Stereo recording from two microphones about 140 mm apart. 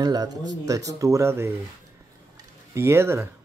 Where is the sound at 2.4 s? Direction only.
20° right (ahead or behind).